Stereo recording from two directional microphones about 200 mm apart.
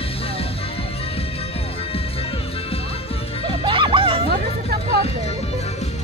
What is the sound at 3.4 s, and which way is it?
Music, 25° right (ahead or behind).